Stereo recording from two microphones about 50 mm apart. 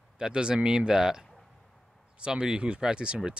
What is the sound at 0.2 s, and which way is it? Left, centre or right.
Speech, centre.